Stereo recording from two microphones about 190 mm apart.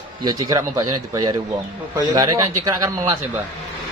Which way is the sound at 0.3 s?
20° right (ahead or behind).